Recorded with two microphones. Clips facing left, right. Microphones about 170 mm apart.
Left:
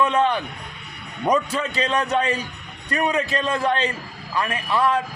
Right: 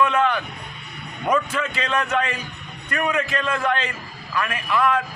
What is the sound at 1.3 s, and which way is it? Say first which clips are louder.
A man's voice: left 1 dB; 35° left (ahead or behind).